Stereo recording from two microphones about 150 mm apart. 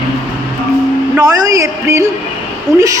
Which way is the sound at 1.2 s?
25° right (ahead or behind).